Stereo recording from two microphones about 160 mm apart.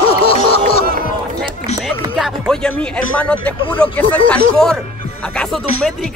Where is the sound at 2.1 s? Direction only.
5° right (ahead or behind).